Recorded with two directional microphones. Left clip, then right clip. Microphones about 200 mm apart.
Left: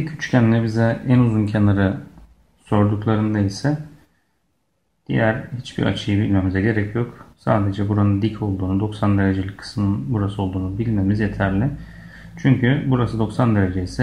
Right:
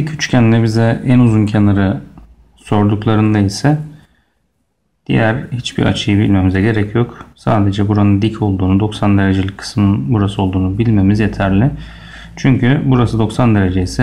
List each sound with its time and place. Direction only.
0.0 s speech: 25° right (ahead or behind)
5.0 s speech: 25° right (ahead or behind)